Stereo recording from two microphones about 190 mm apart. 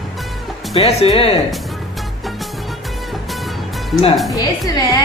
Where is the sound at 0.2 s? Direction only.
Centre (ahead or behind).